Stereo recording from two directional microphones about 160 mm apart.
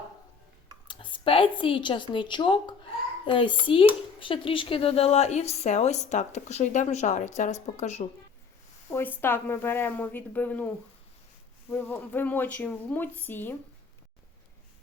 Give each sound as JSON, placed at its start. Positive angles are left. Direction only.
{"t": 0.9, "sound": "a woman's voice", "side_deg": 30}
{"t": 8.9, "sound": "speech", "side_deg": 15}
{"t": 11.7, "sound": "speech", "side_deg": 10}